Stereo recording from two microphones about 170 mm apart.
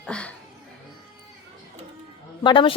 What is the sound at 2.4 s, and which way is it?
Speech, 30° left (ahead or behind).